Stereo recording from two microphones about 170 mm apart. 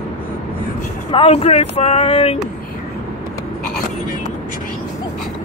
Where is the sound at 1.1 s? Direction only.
35° left (ahead or behind).